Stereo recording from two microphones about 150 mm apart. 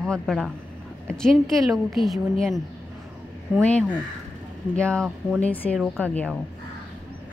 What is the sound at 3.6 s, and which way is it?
A woman's voice, 10° left (ahead or behind).